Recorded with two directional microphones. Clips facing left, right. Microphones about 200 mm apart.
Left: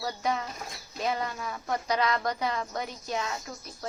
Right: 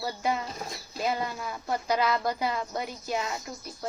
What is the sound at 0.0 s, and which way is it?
Speech, 5° right (ahead or behind).